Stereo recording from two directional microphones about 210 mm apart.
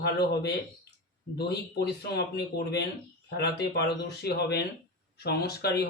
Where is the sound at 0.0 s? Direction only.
50° left (ahead or behind).